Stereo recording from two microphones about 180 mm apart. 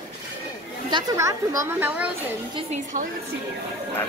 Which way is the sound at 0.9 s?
20° right (ahead or behind).